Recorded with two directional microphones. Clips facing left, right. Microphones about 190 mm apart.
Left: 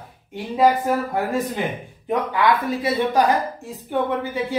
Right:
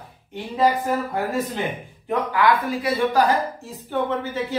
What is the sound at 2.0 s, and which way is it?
Speech, 25° left (ahead or behind).